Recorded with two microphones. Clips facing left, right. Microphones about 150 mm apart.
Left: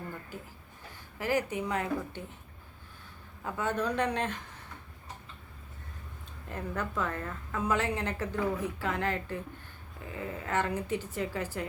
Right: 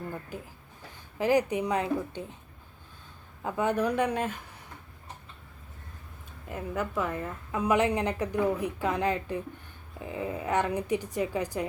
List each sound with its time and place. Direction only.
1.2 s a woman's voice: 15° right (ahead or behind)
3.4 s a woman's voice: 15° right (ahead or behind)
6.5 s a woman's voice: 10° right (ahead or behind)